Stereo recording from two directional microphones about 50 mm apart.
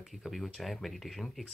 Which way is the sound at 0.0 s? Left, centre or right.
Centre.